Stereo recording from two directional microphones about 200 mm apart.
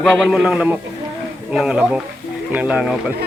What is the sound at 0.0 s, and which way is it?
A man's voice, centre (ahead or behind).